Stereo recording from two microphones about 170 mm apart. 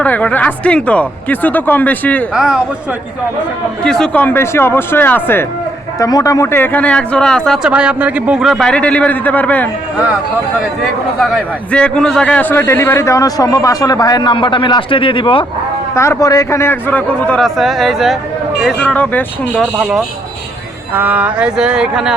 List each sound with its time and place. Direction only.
0.0 s a man's voice: 10° left (ahead or behind)
2.3 s speech: 5° right (ahead or behind)
3.8 s a man's voice: 5° left (ahead or behind)
11.2 s a man's voice: centre (ahead or behind); by 15.4 s 30° left (ahead or behind)
16.0 s a man's voice: 20° left (ahead or behind); by 22.1 s 5° right (ahead or behind)